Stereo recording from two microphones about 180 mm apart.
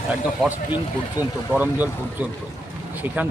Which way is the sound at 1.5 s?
10° right (ahead or behind).